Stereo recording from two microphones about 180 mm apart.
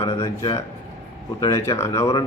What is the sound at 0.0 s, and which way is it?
A man's voice, 25° left (ahead or behind).